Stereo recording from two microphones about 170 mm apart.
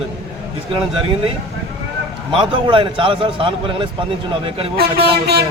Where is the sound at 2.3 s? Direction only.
30° right (ahead or behind).